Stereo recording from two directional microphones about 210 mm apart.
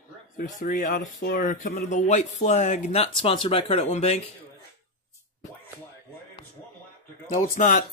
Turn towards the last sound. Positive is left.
turn(degrees=35)  # may be behind; listen again after turning